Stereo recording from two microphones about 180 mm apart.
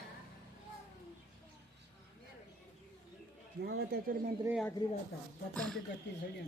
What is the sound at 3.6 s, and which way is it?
Speech, 60° right (ahead or behind).